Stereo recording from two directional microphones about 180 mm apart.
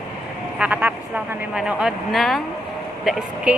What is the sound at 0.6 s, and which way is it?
A woman's voice, 10° right (ahead or behind).